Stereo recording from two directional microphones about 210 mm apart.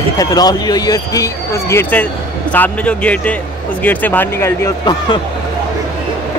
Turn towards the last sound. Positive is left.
turn(degrees=15)  # may be behind; listen again after turning